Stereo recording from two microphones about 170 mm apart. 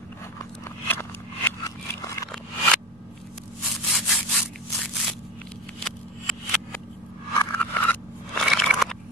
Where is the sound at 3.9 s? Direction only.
Centre (ahead or behind).